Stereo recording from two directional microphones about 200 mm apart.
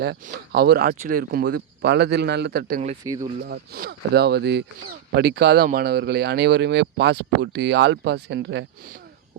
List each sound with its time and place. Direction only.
0.5 s speech: 55° right (ahead or behind)
3.0 s speech: 15° right (ahead or behind)
3.4 s speech: 50° right (ahead or behind)